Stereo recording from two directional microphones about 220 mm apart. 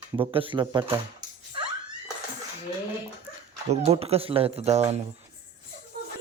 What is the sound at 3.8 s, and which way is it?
Speech, 25° right (ahead or behind).